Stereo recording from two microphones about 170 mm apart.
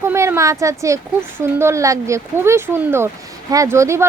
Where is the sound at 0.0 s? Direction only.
15° right (ahead or behind).